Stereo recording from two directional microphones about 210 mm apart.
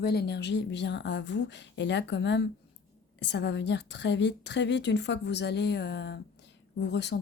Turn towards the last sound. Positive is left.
turn(degrees=55)  # may be behind; listen again after turning